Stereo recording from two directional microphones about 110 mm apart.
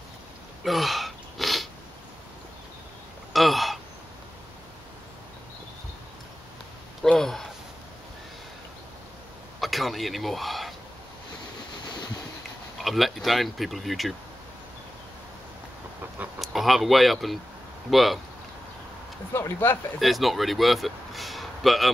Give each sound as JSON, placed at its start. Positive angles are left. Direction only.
{"t": 0.7, "sound": "sneeze", "side_deg": 0}
{"t": 3.3, "sound": "a sound", "side_deg": 0}
{"t": 7.0, "sound": "a sound", "side_deg": 5}
{"t": 9.6, "sound": "speech", "side_deg": 0}
{"t": 12.8, "sound": "speech", "side_deg": 0}
{"t": 16.3, "sound": "speech", "side_deg": 0}
{"t": 19.3, "sound": "speech", "side_deg": 20}
{"t": 20.0, "sound": "a man's voice", "side_deg": 0}